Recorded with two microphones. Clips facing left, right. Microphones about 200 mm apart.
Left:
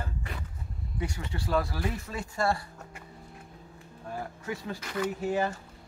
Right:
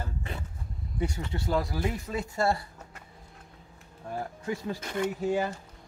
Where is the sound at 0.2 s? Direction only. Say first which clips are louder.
Right 2 dB; 25° right (ahead or behind).